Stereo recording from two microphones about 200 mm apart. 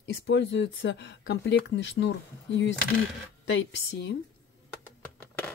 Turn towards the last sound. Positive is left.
turn(degrees=10)  # may be behind; listen again after turning